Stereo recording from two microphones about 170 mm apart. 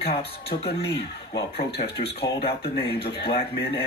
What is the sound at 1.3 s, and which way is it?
Speech, 35° left (ahead or behind).